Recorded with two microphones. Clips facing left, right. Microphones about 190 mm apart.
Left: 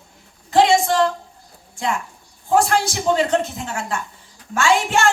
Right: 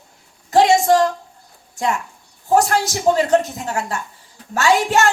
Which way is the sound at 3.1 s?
40° right (ahead or behind).